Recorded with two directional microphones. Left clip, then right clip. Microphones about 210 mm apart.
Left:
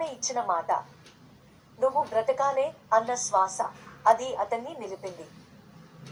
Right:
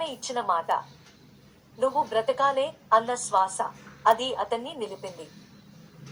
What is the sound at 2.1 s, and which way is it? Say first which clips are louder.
A woman's voice: right 1 dB; 25° right (ahead or behind).